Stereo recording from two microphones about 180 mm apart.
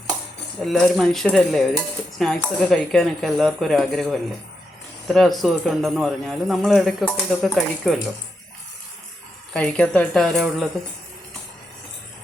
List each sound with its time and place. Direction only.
0.6 s a man's voice: centre (ahead or behind)
9.5 s a man's voice: 5° left (ahead or behind)